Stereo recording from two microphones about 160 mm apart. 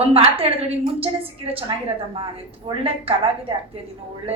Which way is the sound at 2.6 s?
35° right (ahead or behind).